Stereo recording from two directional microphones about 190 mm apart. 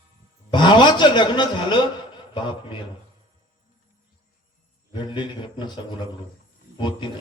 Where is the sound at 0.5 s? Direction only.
25° left (ahead or behind).